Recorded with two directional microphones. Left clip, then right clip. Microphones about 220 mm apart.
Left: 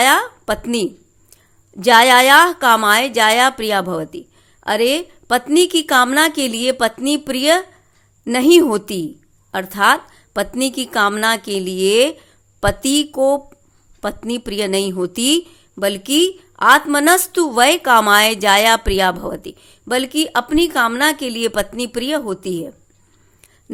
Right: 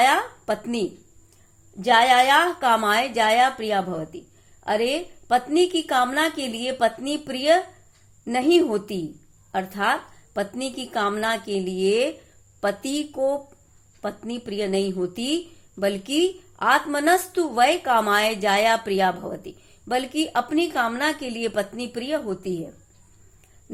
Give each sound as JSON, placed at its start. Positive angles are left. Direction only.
{"t": 0.0, "sound": "a woman's voice", "side_deg": 40}